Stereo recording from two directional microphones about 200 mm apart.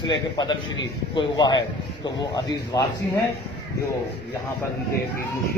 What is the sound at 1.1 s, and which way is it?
Speech, 20° left (ahead or behind).